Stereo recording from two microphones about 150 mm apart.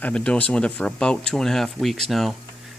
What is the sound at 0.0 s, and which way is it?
Speech, 5° left (ahead or behind).